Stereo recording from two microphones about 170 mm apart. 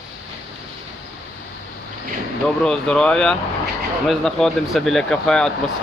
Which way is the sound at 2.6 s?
5° left (ahead or behind).